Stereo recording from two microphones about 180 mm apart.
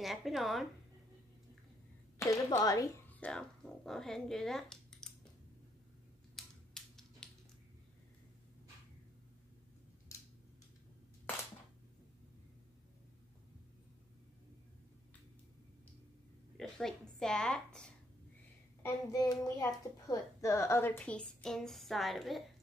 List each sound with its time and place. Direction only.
0.0 s a woman's voice: centre (ahead or behind)
2.1 s speech: 15° left (ahead or behind)
6.3 s typewriter: centre (ahead or behind)
16.5 s a sound: 5° left (ahead or behind)
18.8 s child singing: 15° left (ahead or behind)
19.6 s a woman's voice: 20° left (ahead or behind); by 22.4 s centre (ahead or behind)